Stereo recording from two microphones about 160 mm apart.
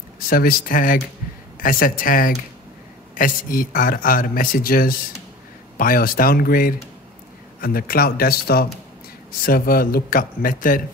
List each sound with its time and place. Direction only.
0.3 s speech: 65° left (ahead or behind)